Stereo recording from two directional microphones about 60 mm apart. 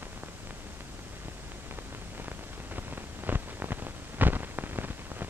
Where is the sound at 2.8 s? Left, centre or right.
Right.